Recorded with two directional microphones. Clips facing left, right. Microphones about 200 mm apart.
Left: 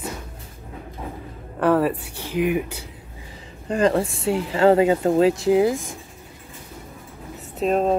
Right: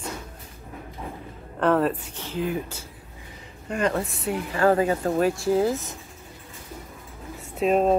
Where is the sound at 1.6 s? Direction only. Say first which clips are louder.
Left 2 dB; 10° left (ahead or behind).